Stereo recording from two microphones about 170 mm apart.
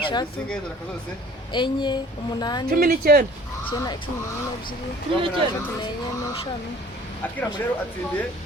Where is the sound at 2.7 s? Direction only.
60° right (ahead or behind).